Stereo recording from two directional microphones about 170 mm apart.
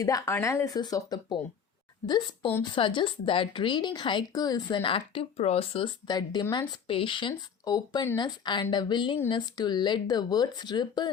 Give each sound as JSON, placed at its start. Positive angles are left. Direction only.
{"t": 0.0, "sound": "a woman's voice", "side_deg": 20}